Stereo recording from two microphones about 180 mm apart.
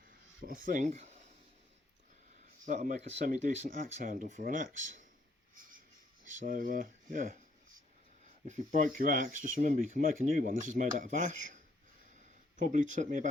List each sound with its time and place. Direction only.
0.1 s speech: 50° right (ahead or behind)
2.6 s speech: 45° right (ahead or behind)
6.2 s speech: 45° right (ahead or behind)
8.4 s speech: 45° right (ahead or behind)